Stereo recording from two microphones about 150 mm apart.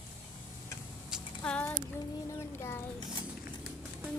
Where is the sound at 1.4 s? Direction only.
10° left (ahead or behind).